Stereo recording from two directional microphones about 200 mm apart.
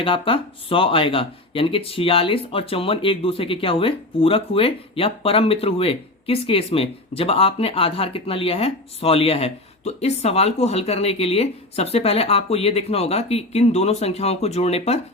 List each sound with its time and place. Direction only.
0.0 s speech: 25° left (ahead or behind)